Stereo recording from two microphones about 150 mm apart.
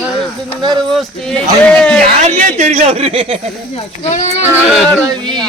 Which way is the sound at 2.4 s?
55° right (ahead or behind).